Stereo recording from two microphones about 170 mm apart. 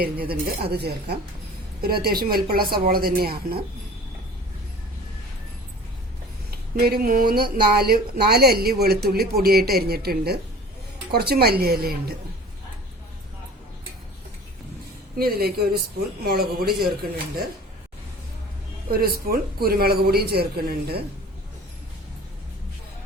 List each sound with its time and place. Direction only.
0.0 s a woman's voice: 65° right (ahead or behind)
6.7 s speech: 60° right (ahead or behind)
15.2 s speech: 65° right (ahead or behind)
18.9 s speech: 60° right (ahead or behind)